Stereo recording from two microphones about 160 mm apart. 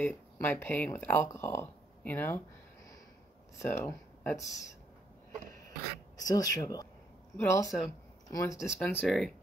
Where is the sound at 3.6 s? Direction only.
15° left (ahead or behind).